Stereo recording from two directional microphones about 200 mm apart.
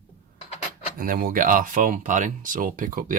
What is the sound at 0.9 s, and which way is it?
Speech, 45° right (ahead or behind).